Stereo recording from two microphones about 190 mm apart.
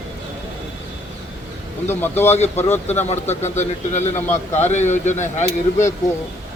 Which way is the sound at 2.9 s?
35° left (ahead or behind).